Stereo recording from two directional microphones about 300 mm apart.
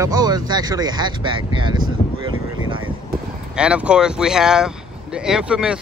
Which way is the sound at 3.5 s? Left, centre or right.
Centre.